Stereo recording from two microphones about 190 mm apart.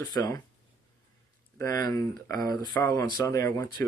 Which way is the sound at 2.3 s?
50° right (ahead or behind).